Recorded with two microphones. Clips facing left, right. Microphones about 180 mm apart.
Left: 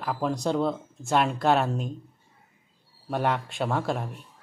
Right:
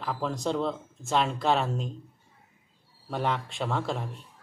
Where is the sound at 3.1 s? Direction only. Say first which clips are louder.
Left 3 dB; 5° left (ahead or behind).